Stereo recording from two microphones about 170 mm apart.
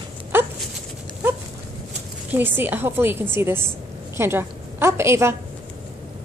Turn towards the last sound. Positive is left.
turn(degrees=-15)  # may be behind; listen again after turning